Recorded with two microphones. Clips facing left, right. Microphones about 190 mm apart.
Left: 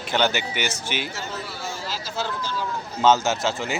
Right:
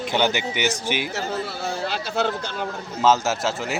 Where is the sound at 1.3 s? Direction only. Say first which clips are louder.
Right 5 dB; 65° right (ahead or behind).